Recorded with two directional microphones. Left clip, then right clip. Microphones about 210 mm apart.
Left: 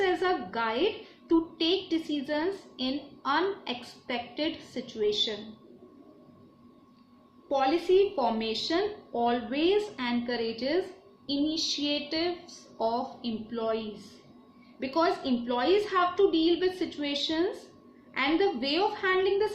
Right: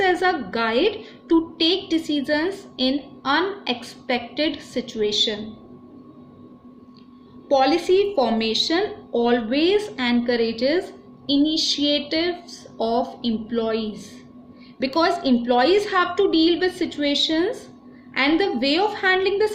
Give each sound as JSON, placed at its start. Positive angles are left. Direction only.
{"t": 0.0, "sound": "a woman's voice", "side_deg": -40}
{"t": 7.4, "sound": "a woman's voice", "side_deg": -45}